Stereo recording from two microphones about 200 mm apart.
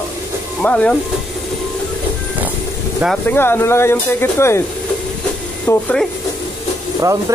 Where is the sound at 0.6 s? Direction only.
5° left (ahead or behind).